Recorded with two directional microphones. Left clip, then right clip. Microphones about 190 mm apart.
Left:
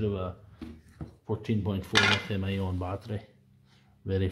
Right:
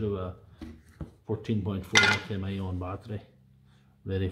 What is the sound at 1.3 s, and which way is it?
Speech, centre (ahead or behind).